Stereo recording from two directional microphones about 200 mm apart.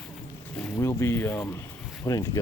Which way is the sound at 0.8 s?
15° left (ahead or behind).